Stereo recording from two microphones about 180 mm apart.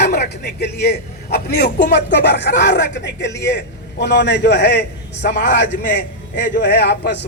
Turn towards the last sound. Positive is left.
turn(degrees=70)  # may be behind; listen again after turning